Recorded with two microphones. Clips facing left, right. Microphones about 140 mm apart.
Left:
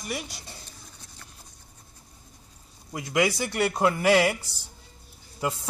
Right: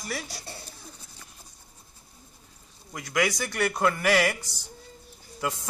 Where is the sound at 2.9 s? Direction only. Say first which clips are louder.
Left 2 dB; 25° left (ahead or behind).